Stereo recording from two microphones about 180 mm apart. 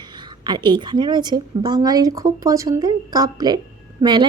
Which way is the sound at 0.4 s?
25° right (ahead or behind).